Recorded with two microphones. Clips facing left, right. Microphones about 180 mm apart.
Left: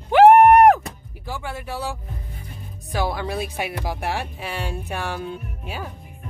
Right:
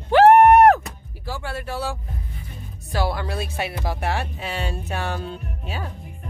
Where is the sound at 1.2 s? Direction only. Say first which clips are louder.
Right 1 dB; 15° left (ahead or behind).